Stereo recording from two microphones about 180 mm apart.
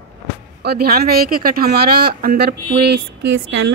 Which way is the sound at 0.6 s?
60° right (ahead or behind).